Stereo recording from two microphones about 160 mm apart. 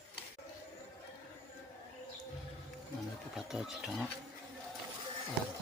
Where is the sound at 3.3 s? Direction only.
Centre (ahead or behind).